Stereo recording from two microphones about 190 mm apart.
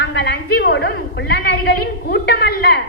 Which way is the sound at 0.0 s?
60° left (ahead or behind).